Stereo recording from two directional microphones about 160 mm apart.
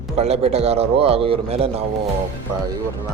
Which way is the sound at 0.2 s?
40° right (ahead or behind).